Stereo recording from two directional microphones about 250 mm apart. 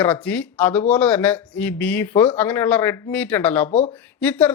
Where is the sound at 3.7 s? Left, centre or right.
Left.